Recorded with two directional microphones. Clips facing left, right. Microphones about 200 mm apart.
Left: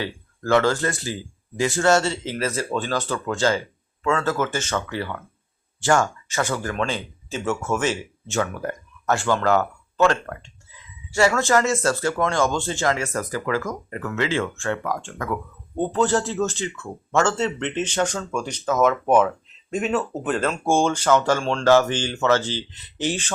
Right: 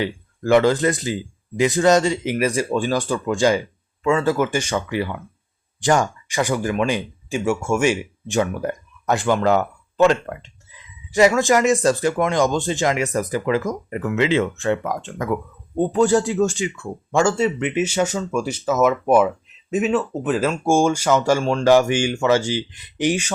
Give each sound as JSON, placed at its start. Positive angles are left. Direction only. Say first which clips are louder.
{"t": 0.0, "sound": "speech", "louder": "right 5 dB", "side_deg": -15}